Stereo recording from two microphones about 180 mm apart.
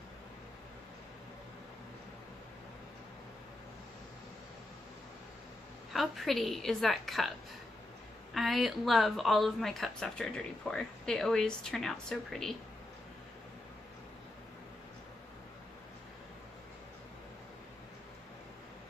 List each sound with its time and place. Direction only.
5.9 s speech: centre (ahead or behind)